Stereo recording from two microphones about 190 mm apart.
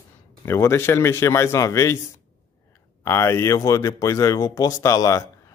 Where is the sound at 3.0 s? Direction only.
15° left (ahead or behind).